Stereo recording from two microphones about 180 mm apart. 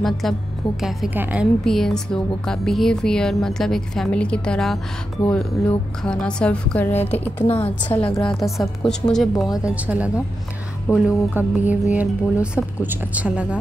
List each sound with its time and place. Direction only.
0.0 s a woman's voice: centre (ahead or behind)
1.6 s a woman's voice: centre (ahead or behind)
10.9 s a woman's voice: 15° left (ahead or behind)
11.3 s a woman's voice: 10° right (ahead or behind)